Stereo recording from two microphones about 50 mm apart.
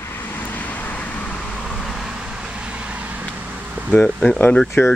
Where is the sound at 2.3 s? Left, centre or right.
Centre.